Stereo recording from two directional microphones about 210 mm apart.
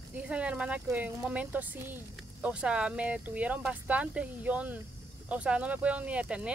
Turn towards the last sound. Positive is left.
turn(degrees=-5)  # may be behind; listen again after turning